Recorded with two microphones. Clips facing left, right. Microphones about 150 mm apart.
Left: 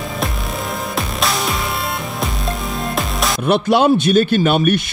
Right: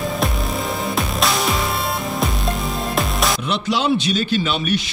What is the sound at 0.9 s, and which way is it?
Music, centre (ahead or behind).